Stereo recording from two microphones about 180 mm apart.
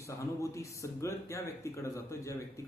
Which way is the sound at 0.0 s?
15° left (ahead or behind).